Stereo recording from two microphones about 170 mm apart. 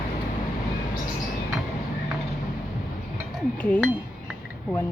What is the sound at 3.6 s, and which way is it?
Speech, 10° left (ahead or behind).